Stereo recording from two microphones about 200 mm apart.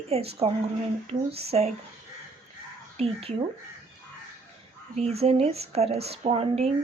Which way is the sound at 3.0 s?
30° right (ahead or behind).